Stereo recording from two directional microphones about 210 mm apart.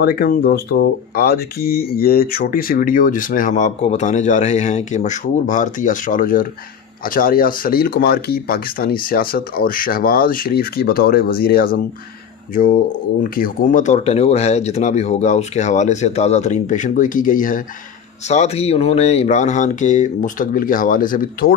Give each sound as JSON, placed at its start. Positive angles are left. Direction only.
{"t": 0.0, "sound": "speech", "side_deg": 45}